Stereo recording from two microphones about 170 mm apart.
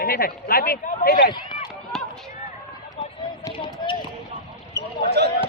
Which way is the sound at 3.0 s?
30° left (ahead or behind).